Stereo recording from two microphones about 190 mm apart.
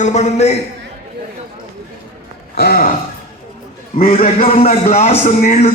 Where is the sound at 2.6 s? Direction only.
55° left (ahead or behind).